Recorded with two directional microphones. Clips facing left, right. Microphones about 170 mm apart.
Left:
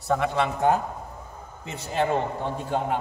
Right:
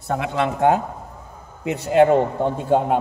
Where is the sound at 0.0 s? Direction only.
60° right (ahead or behind).